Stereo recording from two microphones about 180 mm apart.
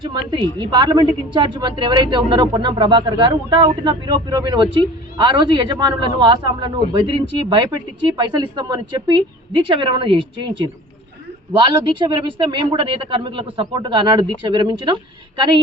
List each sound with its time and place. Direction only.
0.0 s a woman's voice: 25° right (ahead or behind)
11.6 s a woman's voice: 25° right (ahead or behind)